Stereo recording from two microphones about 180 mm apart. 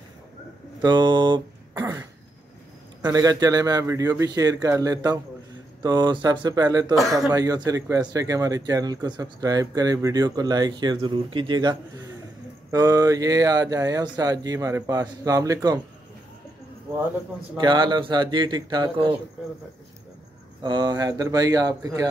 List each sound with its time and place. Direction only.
0.8 s speech: 25° right (ahead or behind)
1.7 s throat clearing: 15° right (ahead or behind)
3.0 s speech: 20° right (ahead or behind)
12.7 s speech: 20° right (ahead or behind)
17.6 s speech: 25° right (ahead or behind)
20.6 s speech: 25° right (ahead or behind)